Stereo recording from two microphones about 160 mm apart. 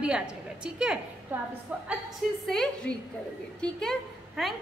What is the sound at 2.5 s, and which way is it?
A woman's voice, 5° left (ahead or behind).